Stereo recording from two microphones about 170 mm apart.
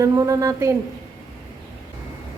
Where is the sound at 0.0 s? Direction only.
20° right (ahead or behind).